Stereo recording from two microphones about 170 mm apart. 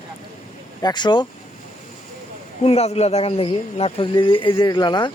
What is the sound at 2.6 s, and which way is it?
Speech, 35° left (ahead or behind).